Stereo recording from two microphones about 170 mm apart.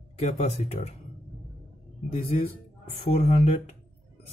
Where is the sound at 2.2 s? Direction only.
35° left (ahead or behind).